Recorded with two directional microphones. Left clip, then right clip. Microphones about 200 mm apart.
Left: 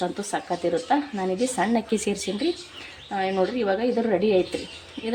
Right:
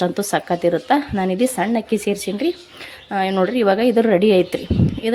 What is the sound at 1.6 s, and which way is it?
A woman's voice, 20° right (ahead or behind).